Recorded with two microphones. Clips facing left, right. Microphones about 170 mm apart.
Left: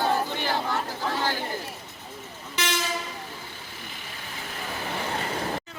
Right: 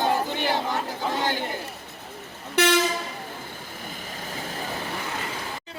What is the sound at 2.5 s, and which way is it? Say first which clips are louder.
Train: right 9 dB; 60° right (ahead or behind).